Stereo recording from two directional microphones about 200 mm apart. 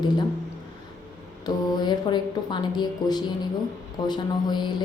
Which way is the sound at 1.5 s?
20° left (ahead or behind).